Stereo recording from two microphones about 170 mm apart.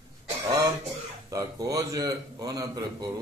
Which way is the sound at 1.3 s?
20° right (ahead or behind).